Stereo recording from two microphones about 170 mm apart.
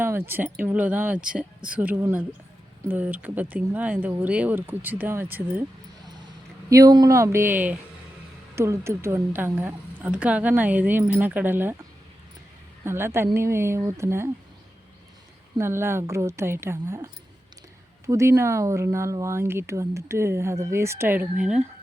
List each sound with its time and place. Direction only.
0.0 s speech: 15° right (ahead or behind)
6.7 s speech: 20° right (ahead or behind)
12.8 s speech: 15° right (ahead or behind)
15.5 s speech: 15° right (ahead or behind)